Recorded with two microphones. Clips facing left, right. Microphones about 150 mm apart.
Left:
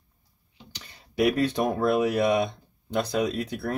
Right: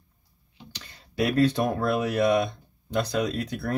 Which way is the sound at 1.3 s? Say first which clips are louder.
Right 2 dB; 15° left (ahead or behind).